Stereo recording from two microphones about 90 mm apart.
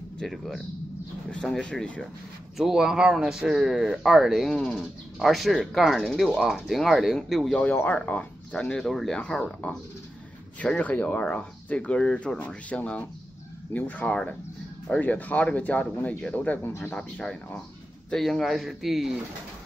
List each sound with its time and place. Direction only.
0.2 s speech: 5° left (ahead or behind)
2.5 s speech: 5° right (ahead or behind)
7.5 s speech: 15° left (ahead or behind)
16.9 s speech: 5° left (ahead or behind)